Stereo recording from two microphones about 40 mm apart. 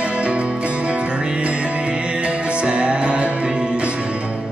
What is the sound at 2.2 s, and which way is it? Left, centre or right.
Music, right.